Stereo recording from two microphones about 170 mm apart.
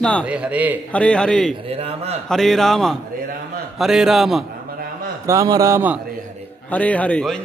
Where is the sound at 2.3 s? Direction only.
Centre (ahead or behind).